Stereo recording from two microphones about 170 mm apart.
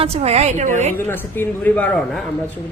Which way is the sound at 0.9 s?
10° left (ahead or behind).